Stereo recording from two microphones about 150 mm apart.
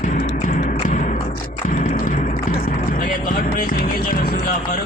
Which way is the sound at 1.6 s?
65° left (ahead or behind).